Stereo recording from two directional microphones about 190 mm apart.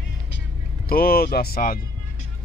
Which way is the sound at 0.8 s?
55° left (ahead or behind).